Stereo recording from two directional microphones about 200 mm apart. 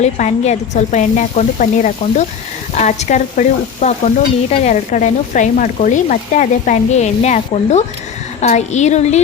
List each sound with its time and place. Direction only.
0.0 s speech: 35° left (ahead or behind)